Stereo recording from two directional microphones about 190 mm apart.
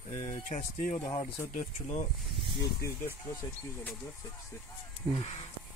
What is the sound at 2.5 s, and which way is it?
Speech, 15° left (ahead or behind).